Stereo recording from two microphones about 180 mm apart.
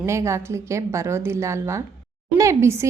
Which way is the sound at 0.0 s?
15° right (ahead or behind).